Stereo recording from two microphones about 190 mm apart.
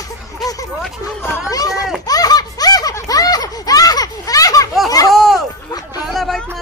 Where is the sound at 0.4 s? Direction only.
20° left (ahead or behind).